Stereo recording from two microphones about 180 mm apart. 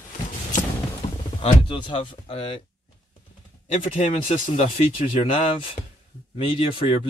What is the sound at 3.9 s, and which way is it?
Speech, 30° left (ahead or behind).